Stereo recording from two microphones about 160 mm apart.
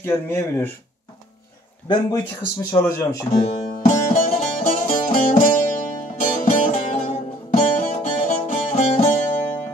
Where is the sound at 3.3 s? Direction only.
40° left (ahead or behind).